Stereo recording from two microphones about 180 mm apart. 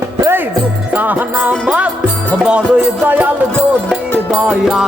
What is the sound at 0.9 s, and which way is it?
Music, 10° right (ahead or behind).